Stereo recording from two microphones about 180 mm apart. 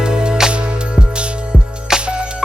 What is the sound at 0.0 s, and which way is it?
Music, 5° right (ahead or behind).